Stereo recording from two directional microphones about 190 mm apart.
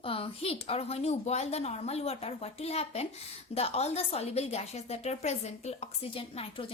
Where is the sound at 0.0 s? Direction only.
30° left (ahead or behind).